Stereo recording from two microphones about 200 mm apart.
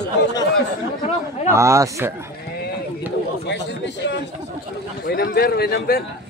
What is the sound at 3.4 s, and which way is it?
Chatter, 60° left (ahead or behind).